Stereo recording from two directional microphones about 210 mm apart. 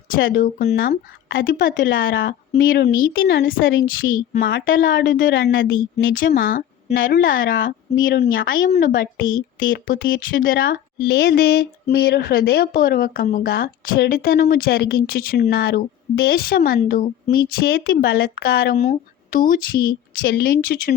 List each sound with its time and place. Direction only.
0.2 s speech: 45° left (ahead or behind)
1.3 s a woman's voice: 65° left (ahead or behind)
2.2 s speech: 50° left (ahead or behind)
3.6 s a woman's voice: 65° left (ahead or behind)
6.1 s speech: 40° left (ahead or behind)
7.5 s a woman's voice: 60° left (ahead or behind)
9.7 s speech: 40° left (ahead or behind)
10.0 s speech: 65° left (ahead or behind); by 20.9 s 45° left (ahead or behind)